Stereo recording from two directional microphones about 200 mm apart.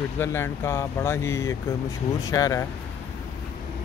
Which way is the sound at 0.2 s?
10° left (ahead or behind).